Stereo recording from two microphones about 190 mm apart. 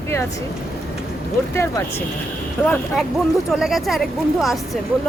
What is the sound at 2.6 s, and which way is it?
Speech, centre (ahead or behind).